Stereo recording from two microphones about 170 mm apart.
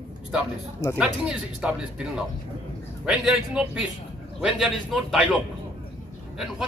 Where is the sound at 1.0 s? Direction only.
5° right (ahead or behind).